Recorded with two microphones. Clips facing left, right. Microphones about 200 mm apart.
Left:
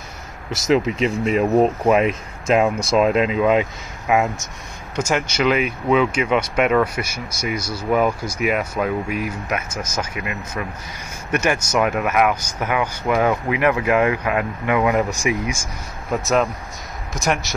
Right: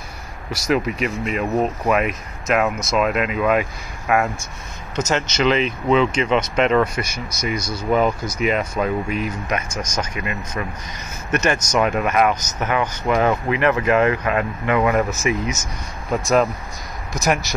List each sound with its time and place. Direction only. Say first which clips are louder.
0.5 s speech: left 2 dB; 25° left (ahead or behind); by 17.6 s centre (ahead or behind)